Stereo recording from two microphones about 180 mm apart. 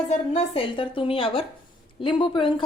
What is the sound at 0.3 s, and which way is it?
A woman's voice, 30° left (ahead or behind).